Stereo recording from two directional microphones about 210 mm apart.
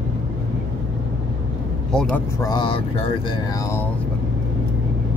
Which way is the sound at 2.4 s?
20° left (ahead or behind).